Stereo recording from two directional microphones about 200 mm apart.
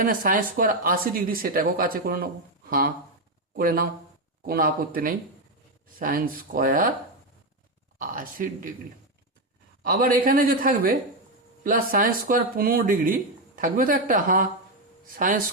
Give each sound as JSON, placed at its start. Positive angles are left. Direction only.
{"t": 0.0, "sound": "speech", "side_deg": -45}
{"t": 7.9, "sound": "speech", "side_deg": -45}
{"t": 9.8, "sound": "speech", "side_deg": -45}